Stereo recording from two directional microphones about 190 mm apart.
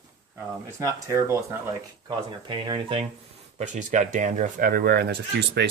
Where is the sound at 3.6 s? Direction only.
40° right (ahead or behind); by 5.6 s 60° right (ahead or behind).